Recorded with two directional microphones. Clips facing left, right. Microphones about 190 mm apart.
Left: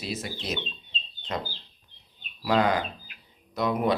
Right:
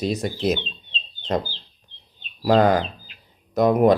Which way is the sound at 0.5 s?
30° right (ahead or behind).